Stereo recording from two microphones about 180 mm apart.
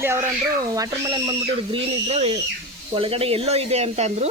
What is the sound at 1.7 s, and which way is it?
Speech, 35° right (ahead or behind).